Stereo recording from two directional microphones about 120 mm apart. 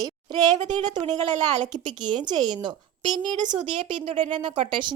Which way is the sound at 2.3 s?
35° right (ahead or behind).